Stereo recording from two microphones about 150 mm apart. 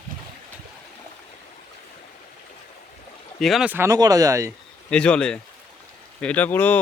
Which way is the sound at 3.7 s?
15° right (ahead or behind).